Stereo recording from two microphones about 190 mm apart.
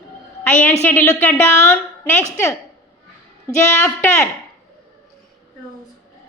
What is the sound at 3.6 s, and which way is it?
Speech, 10° left (ahead or behind).